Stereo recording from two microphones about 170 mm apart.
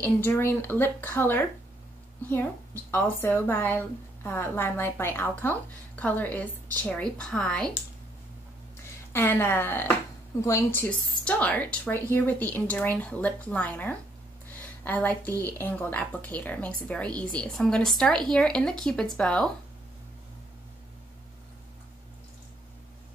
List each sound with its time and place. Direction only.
0.0 s a woman's voice: 10° left (ahead or behind)
2.9 s a woman's voice: 15° left (ahead or behind)
9.1 s a woman's voice: 15° left (ahead or behind)
14.6 s a sound: 10° left (ahead or behind)
15.2 s a woman's voice: 20° right (ahead or behind)
15.5 s a woman's voice: 10° left (ahead or behind)